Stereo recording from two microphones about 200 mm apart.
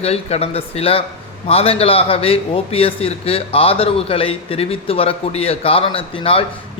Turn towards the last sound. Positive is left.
turn(degrees=30)  # may be behind; listen again after turning